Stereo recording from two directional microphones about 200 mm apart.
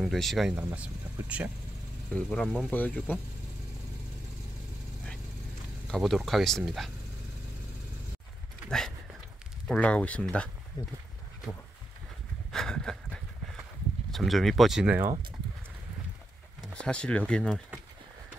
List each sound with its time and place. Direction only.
0.0 s speech: centre (ahead or behind)
2.1 s speech: 5° left (ahead or behind)
5.9 s speech: centre (ahead or behind)
8.6 s a sound: centre (ahead or behind)
9.7 s speech: 5° left (ahead or behind)
10.8 s speech: 20° left (ahead or behind)
12.5 s a sound: 5° left (ahead or behind)
14.1 s speech: centre (ahead or behind)
16.6 s speech: 5° left (ahead or behind)